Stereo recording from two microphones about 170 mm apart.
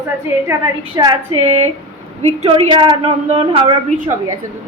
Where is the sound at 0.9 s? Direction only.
25° right (ahead or behind).